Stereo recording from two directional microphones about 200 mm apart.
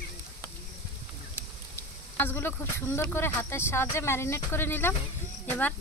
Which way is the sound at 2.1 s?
10° left (ahead or behind).